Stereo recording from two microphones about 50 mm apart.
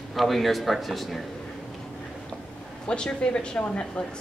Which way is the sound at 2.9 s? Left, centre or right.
Centre.